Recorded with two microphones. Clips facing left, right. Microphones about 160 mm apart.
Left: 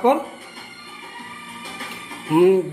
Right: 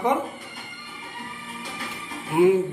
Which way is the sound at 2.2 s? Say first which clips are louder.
Left 4 dB; 60° left (ahead or behind).